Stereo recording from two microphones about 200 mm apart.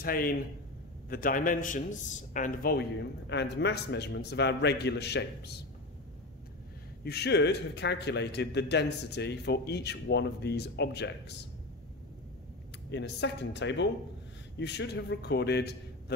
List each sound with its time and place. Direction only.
0.0 s a man's voice: 45° left (ahead or behind)
3.3 s speech: 60° left (ahead or behind)
7.1 s speech: 55° left (ahead or behind)
12.9 s speech: 60° left (ahead or behind)